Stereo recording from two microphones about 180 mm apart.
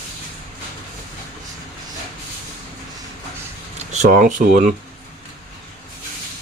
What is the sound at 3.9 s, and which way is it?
Speech, 45° right (ahead or behind).